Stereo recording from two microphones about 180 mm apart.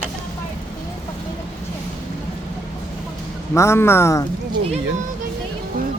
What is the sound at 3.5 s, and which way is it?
Speech, 15° left (ahead or behind).